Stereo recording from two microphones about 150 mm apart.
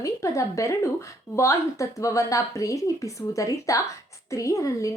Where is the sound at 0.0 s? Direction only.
20° left (ahead or behind).